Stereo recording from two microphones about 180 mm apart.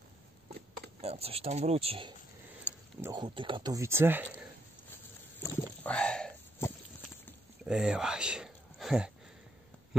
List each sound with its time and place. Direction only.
1.0 s speech: 35° right (ahead or behind); by 4.4 s 10° right (ahead or behind)
5.4 s a sound: 10° left (ahead or behind)
7.6 s speech: 5° right (ahead or behind)